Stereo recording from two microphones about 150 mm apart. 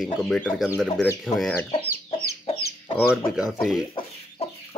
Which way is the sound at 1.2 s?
5° left (ahead or behind).